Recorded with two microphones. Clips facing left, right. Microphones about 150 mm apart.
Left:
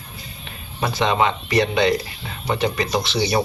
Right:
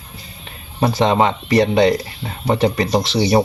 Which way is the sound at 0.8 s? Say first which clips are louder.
Right 4 dB; 40° right (ahead or behind).